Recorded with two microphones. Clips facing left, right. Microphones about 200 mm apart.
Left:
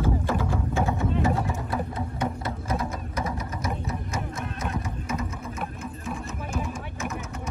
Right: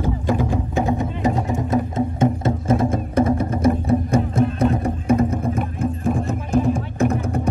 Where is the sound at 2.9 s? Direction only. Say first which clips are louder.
Right 13 dB; 55° right (ahead or behind).